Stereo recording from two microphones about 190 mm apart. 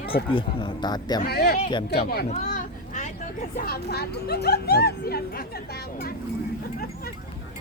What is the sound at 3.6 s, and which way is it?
Speech, 55° left (ahead or behind).